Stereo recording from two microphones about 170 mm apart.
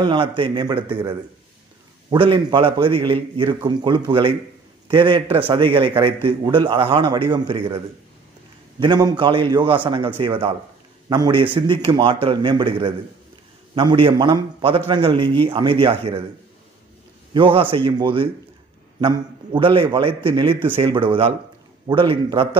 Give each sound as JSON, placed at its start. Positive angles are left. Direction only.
{"t": 0.0, "sound": "a man's voice", "side_deg": -30}
{"t": 17.3, "sound": "a man's voice", "side_deg": -30}